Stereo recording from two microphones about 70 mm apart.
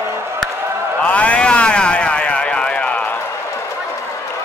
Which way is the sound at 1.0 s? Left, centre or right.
Centre.